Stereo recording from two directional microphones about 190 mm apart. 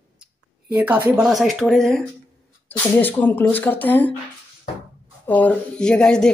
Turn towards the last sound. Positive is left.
turn(degrees=5)  # may be behind; listen again after turning